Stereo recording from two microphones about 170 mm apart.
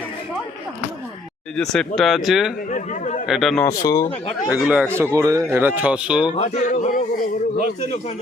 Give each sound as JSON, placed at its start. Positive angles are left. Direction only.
{"t": 1.5, "sound": "speech", "side_deg": 5}
{"t": 2.7, "sound": "a sound", "side_deg": 45}
{"t": 3.2, "sound": "speech", "side_deg": 0}
{"t": 3.6, "sound": "speech", "side_deg": 20}
{"t": 4.4, "sound": "speech", "side_deg": -5}
{"t": 4.9, "sound": "speech", "side_deg": -15}
{"t": 6.3, "sound": "a sound", "side_deg": 40}